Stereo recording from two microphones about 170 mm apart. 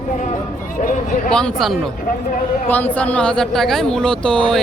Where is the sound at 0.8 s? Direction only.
50° left (ahead or behind).